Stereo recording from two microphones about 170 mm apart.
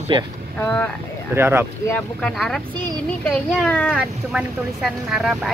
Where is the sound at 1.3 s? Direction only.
15° right (ahead or behind).